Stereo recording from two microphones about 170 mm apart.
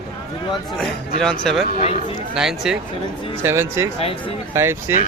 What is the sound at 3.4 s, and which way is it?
Speech, 15° right (ahead or behind).